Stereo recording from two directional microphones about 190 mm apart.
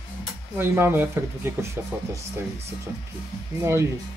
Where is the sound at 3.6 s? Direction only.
15° right (ahead or behind).